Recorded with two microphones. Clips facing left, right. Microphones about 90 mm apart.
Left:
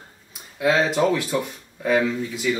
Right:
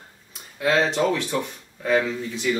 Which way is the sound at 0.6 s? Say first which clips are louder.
Left 1 dB; 5° left (ahead or behind).